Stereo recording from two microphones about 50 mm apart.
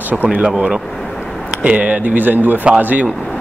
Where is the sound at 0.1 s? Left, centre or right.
Right.